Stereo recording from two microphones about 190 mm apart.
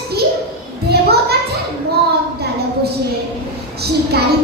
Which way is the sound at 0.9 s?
60° right (ahead or behind).